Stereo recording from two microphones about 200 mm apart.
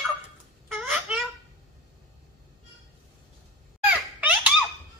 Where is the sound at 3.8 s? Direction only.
5° right (ahead or behind).